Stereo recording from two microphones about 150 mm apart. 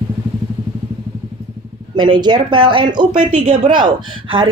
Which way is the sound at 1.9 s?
30° right (ahead or behind).